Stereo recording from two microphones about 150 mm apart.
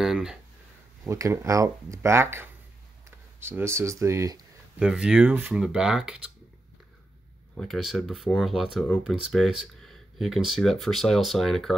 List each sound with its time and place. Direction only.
0.0 s speech: 5° right (ahead or behind)
1.0 s speech: 20° right (ahead or behind)
4.7 s speech: 5° right (ahead or behind)
7.5 s speech: centre (ahead or behind)